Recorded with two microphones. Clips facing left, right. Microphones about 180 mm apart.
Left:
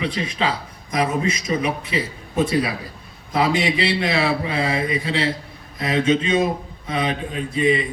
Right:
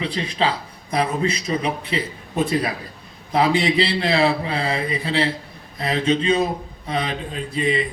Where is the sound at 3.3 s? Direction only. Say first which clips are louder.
Right 2 dB; 30° right (ahead or behind).